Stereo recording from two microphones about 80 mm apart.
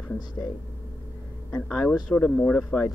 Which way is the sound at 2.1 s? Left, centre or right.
Left.